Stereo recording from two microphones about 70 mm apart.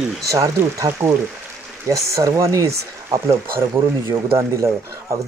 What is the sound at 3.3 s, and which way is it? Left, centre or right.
Speech, right.